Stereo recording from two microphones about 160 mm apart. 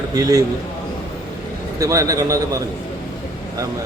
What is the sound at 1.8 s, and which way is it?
Speech, 20° right (ahead or behind).